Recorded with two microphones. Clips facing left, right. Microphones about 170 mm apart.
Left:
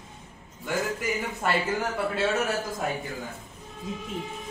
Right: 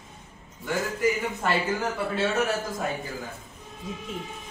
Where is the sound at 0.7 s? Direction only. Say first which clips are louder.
Right 3 dB; centre (ahead or behind).